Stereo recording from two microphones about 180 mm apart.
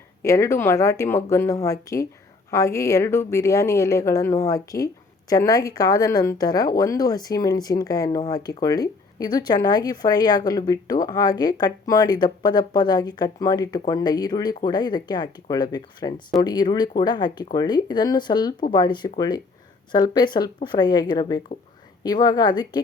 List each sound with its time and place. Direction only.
0.2 s a woman's voice: 15° left (ahead or behind)